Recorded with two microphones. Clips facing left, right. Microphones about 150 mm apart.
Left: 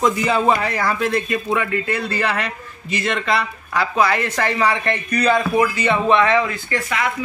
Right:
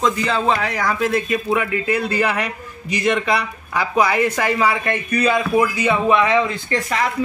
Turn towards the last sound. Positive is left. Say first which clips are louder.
# right 2 dB
turn(degrees=-35)  # may be behind; listen again after turning